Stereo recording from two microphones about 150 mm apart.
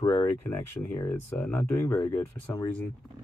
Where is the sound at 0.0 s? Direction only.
25° left (ahead or behind).